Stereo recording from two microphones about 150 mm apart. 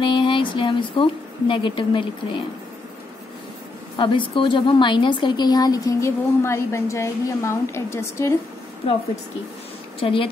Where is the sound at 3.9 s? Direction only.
35° left (ahead or behind); by 8.4 s 20° left (ahead or behind).